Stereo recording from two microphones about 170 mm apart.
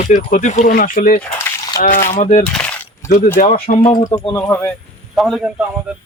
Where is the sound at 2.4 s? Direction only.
5° left (ahead or behind).